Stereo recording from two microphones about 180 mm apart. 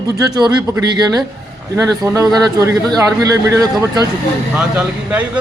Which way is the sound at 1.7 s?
20° right (ahead or behind).